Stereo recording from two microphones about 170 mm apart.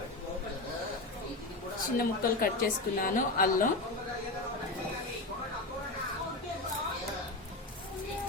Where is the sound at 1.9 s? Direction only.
60° left (ahead or behind).